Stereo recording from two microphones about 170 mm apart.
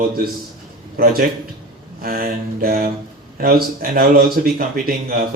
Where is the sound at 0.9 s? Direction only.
60° right (ahead or behind).